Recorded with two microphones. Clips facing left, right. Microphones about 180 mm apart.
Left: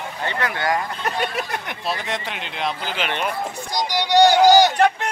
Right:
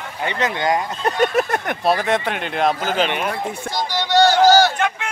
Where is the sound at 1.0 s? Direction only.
45° right (ahead or behind).